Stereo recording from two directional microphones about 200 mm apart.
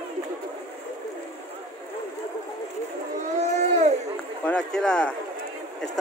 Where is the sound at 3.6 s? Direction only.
35° right (ahead or behind).